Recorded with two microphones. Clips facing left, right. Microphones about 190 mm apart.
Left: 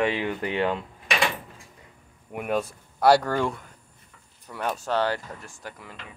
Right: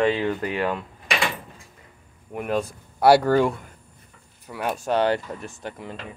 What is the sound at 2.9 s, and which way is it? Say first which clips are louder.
Speech: right 4 dB; 10° right (ahead or behind).